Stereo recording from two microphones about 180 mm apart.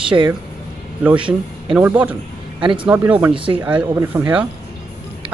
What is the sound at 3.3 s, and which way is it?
Speech, 30° right (ahead or behind).